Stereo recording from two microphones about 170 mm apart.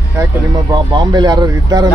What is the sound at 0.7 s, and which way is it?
Speech, 25° right (ahead or behind).